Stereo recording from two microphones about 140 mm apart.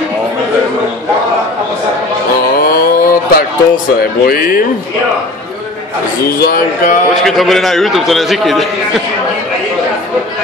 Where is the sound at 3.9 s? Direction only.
90° left.